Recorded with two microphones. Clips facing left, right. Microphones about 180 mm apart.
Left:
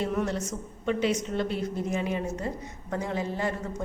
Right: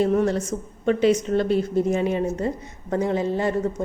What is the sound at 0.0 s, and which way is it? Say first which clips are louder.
A woman's voice: right 8 dB; 35° right (ahead or behind).